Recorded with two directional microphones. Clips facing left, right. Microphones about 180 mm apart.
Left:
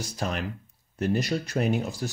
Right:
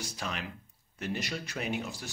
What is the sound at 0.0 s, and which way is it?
Speech, 40° left (ahead or behind).